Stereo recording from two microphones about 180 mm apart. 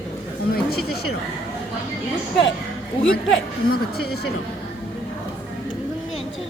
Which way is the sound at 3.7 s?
60° left (ahead or behind).